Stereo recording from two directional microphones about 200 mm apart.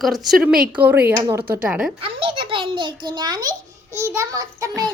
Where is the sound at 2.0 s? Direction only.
25° right (ahead or behind).